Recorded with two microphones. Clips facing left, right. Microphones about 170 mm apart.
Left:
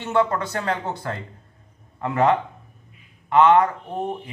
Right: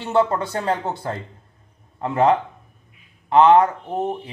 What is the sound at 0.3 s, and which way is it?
Speech, 25° right (ahead or behind).